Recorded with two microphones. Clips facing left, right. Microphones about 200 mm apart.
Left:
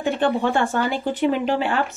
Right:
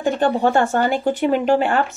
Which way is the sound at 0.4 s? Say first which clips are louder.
Right 4 dB; 50° right (ahead or behind).